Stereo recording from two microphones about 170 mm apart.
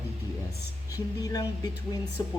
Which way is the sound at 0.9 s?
20° left (ahead or behind).